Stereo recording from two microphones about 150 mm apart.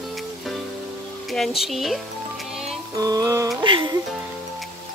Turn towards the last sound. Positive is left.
turn(degrees=-35)  # may be behind; listen again after turning